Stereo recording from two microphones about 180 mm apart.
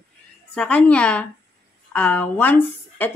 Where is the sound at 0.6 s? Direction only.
5° left (ahead or behind).